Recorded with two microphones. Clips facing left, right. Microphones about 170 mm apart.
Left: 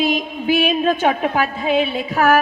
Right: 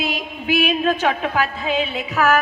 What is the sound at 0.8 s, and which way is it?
Speech, 45° left (ahead or behind).